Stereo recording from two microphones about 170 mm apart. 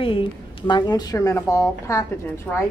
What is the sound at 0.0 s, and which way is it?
Speech, 30° left (ahead or behind).